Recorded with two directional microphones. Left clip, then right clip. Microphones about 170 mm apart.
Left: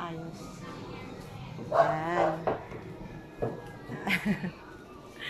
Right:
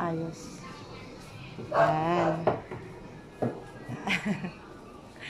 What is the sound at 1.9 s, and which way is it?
Speech, 10° right (ahead or behind).